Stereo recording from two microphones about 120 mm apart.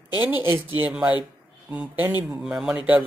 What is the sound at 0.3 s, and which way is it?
Speech, 15° right (ahead or behind).